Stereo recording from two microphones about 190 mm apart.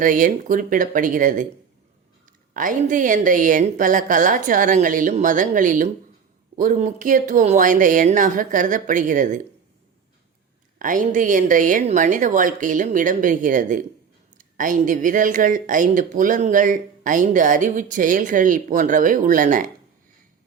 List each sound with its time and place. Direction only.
0.0 s speech: 45° right (ahead or behind)
2.5 s speech: 45° right (ahead or behind)
10.8 s speech: 45° right (ahead or behind)